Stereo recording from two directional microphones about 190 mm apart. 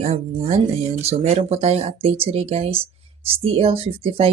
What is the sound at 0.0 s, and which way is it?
Speech, 35° right (ahead or behind).